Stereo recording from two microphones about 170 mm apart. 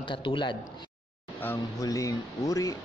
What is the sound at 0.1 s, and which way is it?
Speech, 30° left (ahead or behind).